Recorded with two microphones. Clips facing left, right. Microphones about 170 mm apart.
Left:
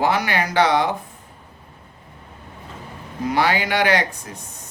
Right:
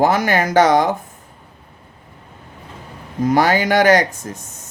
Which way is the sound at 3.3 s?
45° right (ahead or behind).